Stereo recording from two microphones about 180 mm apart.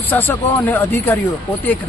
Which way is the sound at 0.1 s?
10° left (ahead or behind).